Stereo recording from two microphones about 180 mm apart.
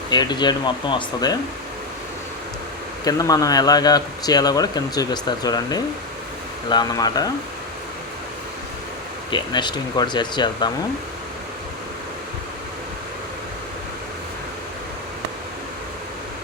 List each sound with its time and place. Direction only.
0.1 s speech: 25° left (ahead or behind)
3.0 s speech: 20° left (ahead or behind)
9.3 s speech: 25° left (ahead or behind)